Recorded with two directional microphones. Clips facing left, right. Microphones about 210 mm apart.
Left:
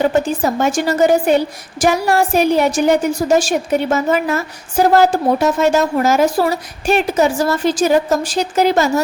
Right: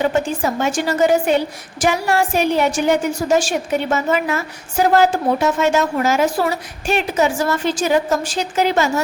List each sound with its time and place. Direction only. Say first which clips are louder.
0.0 s a woman's voice: left 3 dB; 40° left (ahead or behind)